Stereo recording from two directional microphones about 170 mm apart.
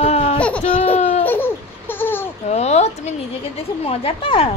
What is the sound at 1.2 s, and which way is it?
Babbling, 10° left (ahead or behind).